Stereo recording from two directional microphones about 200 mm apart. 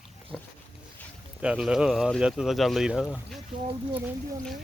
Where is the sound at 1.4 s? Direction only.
5° right (ahead or behind).